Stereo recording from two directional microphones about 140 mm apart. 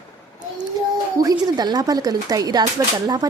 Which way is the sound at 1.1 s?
30° right (ahead or behind).